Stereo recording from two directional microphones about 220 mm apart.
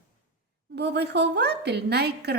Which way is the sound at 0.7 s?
50° right (ahead or behind).